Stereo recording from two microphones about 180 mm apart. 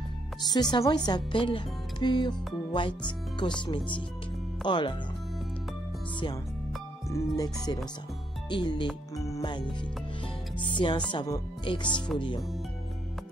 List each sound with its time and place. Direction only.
0.4 s speech: 20° left (ahead or behind)
4.6 s speech: 25° left (ahead or behind)
7.1 s speech: 15° left (ahead or behind)